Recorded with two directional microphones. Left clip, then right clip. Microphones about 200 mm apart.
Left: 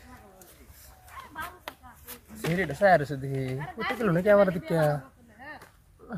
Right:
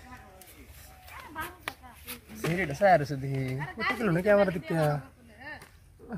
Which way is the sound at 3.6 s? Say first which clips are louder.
Right 4 dB; 40° left (ahead or behind).